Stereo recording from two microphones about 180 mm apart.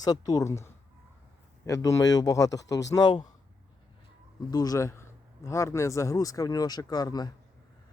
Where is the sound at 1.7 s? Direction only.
20° left (ahead or behind).